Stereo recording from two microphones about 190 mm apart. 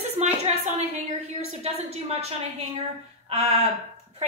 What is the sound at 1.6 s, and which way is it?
Speech, 35° right (ahead or behind).